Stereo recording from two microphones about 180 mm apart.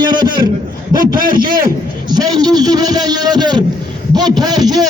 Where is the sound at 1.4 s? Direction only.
55° right (ahead or behind).